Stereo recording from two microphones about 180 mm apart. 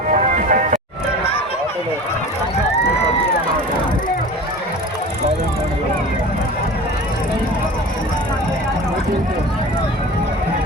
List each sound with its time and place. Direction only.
0.1 s music: 45° right (ahead or behind)